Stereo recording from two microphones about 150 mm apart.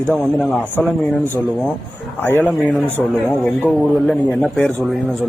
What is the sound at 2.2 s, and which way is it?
Speech, 15° left (ahead or behind).